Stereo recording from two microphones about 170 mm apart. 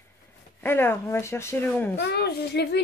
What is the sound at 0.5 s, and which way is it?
Speech, 15° left (ahead or behind).